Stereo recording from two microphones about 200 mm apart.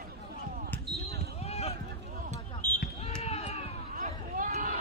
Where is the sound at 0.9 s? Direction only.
30° left (ahead or behind).